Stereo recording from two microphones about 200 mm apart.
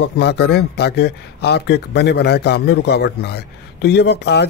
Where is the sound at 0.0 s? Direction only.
55° left (ahead or behind).